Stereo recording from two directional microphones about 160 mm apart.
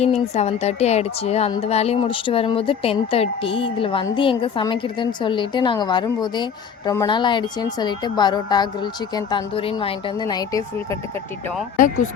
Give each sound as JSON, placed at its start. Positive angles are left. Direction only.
{"t": 0.0, "sound": "a woman's voice", "side_deg": 40}